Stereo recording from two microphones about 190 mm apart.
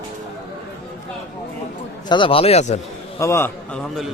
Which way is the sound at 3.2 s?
15° left (ahead or behind).